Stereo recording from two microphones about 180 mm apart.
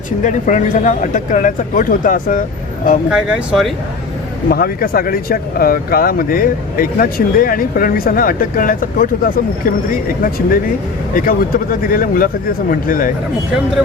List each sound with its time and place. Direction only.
0.2 s speech: 45° left (ahead or behind)
3.1 s speech: 5° right (ahead or behind)
4.4 s speech: 55° left (ahead or behind)